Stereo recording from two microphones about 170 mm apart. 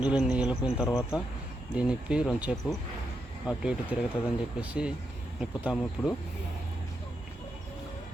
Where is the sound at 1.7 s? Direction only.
5° right (ahead or behind).